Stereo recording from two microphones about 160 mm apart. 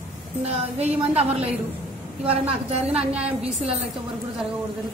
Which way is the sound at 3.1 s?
40° right (ahead or behind).